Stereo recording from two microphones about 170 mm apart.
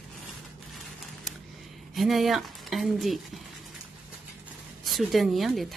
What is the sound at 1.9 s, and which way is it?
Speech, centre (ahead or behind).